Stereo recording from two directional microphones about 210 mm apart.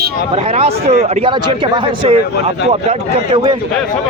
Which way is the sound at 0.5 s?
30° right (ahead or behind).